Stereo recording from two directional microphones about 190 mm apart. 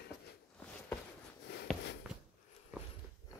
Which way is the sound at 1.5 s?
65° left (ahead or behind).